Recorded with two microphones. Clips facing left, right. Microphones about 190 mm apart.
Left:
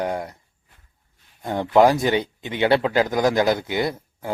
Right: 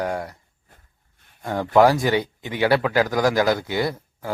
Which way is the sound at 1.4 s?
20° left (ahead or behind).